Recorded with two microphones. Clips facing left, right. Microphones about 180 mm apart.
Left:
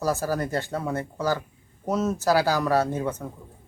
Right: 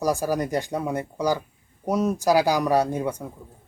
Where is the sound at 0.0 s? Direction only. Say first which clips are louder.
Right 2 dB; 15° right (ahead or behind).